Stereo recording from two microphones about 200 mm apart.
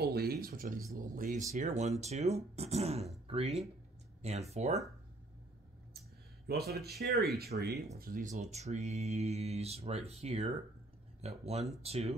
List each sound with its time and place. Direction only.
0.0 s speech: 50° right (ahead or behind); by 4.7 s 35° right (ahead or behind)
6.5 s speech: 55° right (ahead or behind)
8.0 s speech: 40° right (ahead or behind)